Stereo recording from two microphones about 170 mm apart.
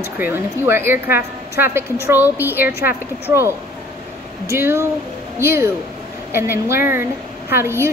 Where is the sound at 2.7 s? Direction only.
70° left (ahead or behind).